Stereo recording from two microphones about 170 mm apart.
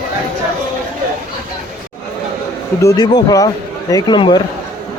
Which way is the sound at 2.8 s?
20° left (ahead or behind).